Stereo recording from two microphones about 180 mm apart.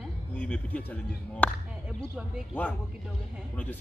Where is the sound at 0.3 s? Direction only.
10° left (ahead or behind).